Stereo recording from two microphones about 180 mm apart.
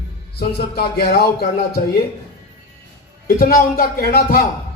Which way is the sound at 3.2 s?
50° left (ahead or behind).